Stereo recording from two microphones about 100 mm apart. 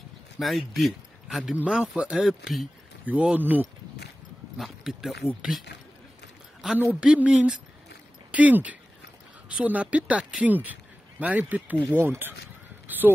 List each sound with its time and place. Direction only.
0.4 s speech: centre (ahead or behind)
3.1 s speech: 15° right (ahead or behind)
4.6 s speech: 5° right (ahead or behind)
6.8 s speech: 15° right (ahead or behind)
12.8 s caw: 20° right (ahead or behind)